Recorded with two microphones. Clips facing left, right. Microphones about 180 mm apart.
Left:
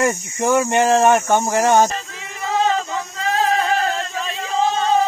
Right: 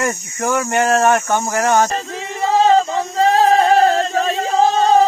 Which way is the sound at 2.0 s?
35° right (ahead or behind).